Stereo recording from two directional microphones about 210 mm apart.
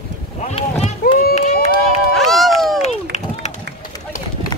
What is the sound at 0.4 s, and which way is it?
Boat, 30° left (ahead or behind).